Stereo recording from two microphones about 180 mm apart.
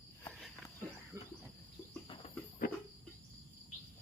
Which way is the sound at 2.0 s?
30° left (ahead or behind).